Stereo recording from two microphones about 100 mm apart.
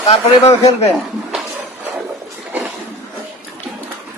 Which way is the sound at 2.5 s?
15° right (ahead or behind).